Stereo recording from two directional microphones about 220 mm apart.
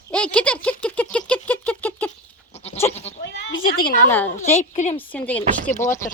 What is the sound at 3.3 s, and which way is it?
Speech, 45° left (ahead or behind).